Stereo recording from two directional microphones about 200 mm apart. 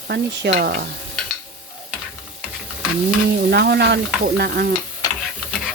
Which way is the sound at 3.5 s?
55° right (ahead or behind).